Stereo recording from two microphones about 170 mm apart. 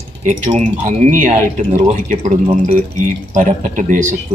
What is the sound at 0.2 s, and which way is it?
Speech, 40° right (ahead or behind).